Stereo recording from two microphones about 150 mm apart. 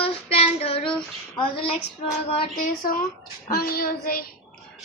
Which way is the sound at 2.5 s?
70° left (ahead or behind).